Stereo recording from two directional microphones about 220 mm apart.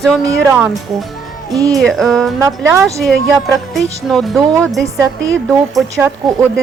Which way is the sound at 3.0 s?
Centre (ahead or behind).